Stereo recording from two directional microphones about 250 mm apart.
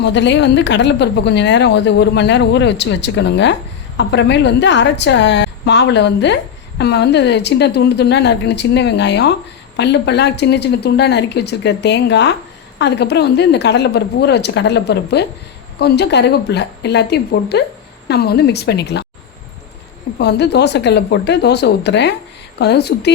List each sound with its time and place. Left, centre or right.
0.0 s a woman's voice: left
20.1 s a woman's voice: left